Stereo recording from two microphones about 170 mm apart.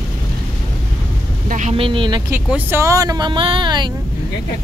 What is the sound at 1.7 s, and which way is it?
Speech, 30° right (ahead or behind).